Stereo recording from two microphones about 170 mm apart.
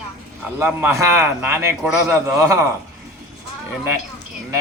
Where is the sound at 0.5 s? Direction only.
10° right (ahead or behind).